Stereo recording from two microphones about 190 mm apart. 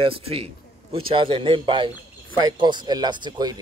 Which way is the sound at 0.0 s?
30° right (ahead or behind).